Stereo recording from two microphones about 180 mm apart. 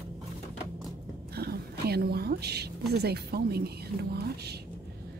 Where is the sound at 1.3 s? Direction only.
60° right (ahead or behind).